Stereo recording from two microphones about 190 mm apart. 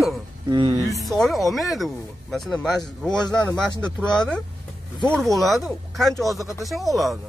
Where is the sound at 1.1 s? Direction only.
Centre (ahead or behind).